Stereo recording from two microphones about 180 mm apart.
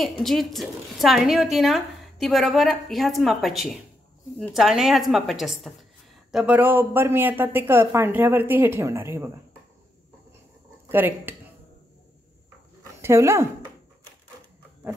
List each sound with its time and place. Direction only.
0.0 s a woman's voice: centre (ahead or behind)
10.9 s speech: 10° right (ahead or behind)
13.0 s speech: 15° right (ahead or behind)